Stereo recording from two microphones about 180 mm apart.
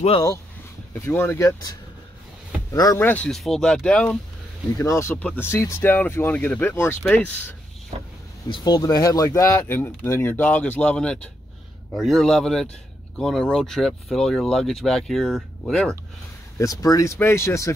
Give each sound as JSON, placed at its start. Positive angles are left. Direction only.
{"t": 0.9, "sound": "speech", "side_deg": 10}
{"t": 4.7, "sound": "speech", "side_deg": 15}
{"t": 7.9, "sound": "speech", "side_deg": -35}
{"t": 8.5, "sound": "speech", "side_deg": 20}
{"t": 16.5, "sound": "speech", "side_deg": 20}